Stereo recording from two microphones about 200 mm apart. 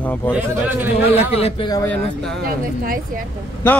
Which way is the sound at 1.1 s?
30° left (ahead or behind).